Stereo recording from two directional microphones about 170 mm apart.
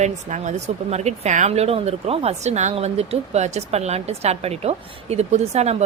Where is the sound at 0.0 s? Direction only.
45° right (ahead or behind).